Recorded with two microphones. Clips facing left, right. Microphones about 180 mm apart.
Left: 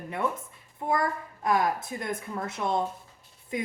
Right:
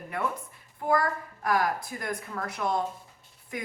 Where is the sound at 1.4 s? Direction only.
25° left (ahead or behind).